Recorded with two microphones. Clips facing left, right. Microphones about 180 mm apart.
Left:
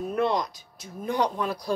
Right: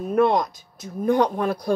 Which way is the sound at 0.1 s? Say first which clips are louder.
Right 8 dB; 50° right (ahead or behind).